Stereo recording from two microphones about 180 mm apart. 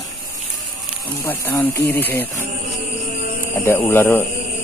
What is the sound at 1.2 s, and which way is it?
Speech, 15° left (ahead or behind).